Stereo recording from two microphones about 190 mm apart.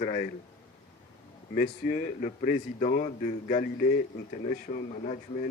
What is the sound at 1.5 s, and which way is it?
Speech, 45° left (ahead or behind).